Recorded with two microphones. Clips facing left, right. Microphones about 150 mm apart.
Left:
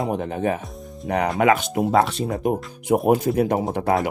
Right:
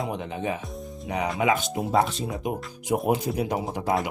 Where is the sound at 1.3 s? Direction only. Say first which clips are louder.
Left 5 dB; 65° left (ahead or behind).